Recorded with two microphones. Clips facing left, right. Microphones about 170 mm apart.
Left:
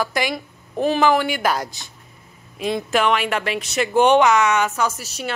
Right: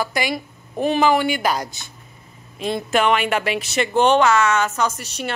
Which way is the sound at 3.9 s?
15° left (ahead or behind).